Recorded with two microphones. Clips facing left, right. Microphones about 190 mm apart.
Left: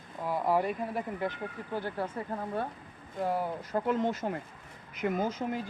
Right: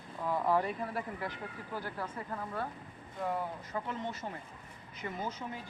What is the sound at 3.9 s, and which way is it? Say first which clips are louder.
Speech: left 10 dB; 90° left.